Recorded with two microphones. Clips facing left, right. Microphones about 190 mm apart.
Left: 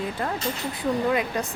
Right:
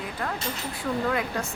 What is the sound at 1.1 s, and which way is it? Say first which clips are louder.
Speech: left 3 dB; 20° left (ahead or behind).